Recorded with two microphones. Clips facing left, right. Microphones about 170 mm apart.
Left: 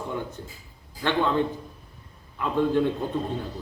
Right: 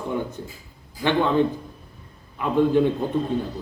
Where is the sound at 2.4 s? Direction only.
15° right (ahead or behind).